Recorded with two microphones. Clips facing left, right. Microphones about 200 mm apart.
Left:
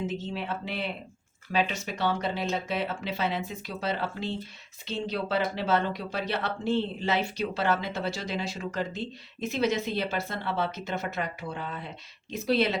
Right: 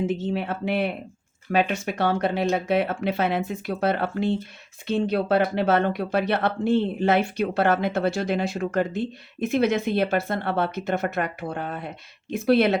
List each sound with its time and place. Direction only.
0.1 s speech: 55° right (ahead or behind)